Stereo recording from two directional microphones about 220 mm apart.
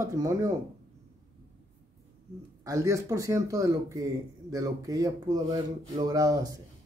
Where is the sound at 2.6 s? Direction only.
15° right (ahead or behind).